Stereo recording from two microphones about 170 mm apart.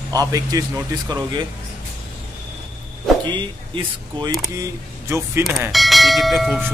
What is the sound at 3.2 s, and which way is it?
Speech, 25° right (ahead or behind).